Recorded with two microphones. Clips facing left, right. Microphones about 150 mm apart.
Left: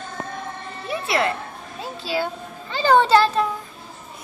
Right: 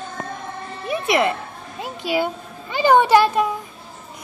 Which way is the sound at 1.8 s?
15° right (ahead or behind).